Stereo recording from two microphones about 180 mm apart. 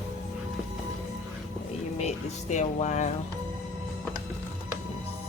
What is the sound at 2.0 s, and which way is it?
Speech, 40° left (ahead or behind).